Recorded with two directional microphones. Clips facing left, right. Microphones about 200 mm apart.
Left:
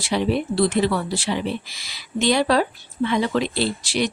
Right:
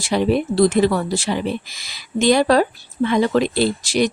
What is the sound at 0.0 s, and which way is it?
Speech, 45° right (ahead or behind).